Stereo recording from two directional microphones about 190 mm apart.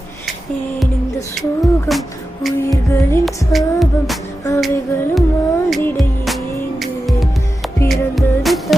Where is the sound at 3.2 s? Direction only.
Centre (ahead or behind).